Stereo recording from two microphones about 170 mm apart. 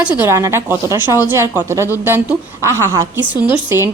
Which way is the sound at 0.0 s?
15° right (ahead or behind).